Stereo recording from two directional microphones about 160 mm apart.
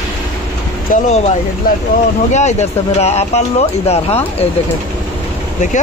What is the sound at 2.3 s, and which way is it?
Speech, 45° left (ahead or behind).